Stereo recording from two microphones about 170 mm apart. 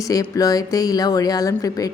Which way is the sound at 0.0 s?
20° left (ahead or behind).